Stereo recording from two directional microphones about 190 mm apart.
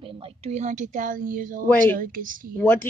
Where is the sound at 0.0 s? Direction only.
30° right (ahead or behind); by 2.6 s 45° right (ahead or behind).